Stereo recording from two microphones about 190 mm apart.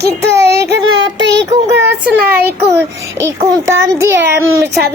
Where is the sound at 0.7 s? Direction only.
70° right (ahead or behind).